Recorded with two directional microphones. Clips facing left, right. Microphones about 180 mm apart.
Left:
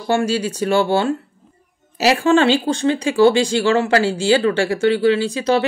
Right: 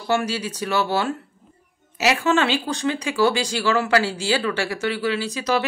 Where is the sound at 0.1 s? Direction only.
30° left (ahead or behind).